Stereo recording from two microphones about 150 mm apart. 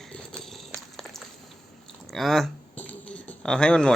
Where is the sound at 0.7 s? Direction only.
5° left (ahead or behind).